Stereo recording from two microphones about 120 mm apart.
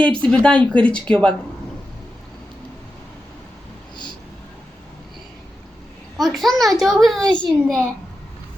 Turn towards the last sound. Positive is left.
turn(degrees=5)  # may be behind; listen again after turning